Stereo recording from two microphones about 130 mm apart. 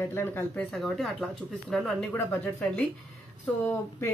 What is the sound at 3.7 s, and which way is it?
Speech, 20° left (ahead or behind).